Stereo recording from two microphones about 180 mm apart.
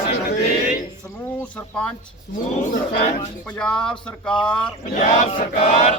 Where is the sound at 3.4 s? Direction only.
5° left (ahead or behind).